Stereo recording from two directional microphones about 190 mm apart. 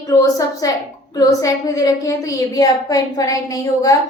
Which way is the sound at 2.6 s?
20° left (ahead or behind).